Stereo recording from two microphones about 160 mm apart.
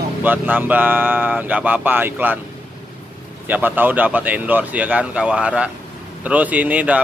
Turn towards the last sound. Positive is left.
turn(degrees=-10)  # may be behind; listen again after turning